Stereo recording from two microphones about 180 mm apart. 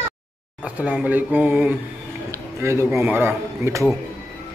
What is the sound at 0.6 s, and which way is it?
A man's voice, 10° right (ahead or behind).